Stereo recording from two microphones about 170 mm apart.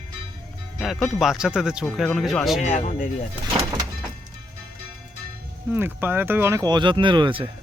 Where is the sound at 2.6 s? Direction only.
45° left (ahead or behind).